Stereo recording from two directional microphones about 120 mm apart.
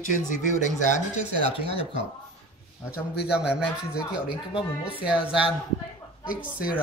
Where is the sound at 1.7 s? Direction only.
45° right (ahead or behind).